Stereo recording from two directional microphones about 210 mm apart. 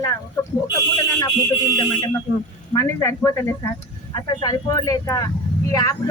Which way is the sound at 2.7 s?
15° left (ahead or behind).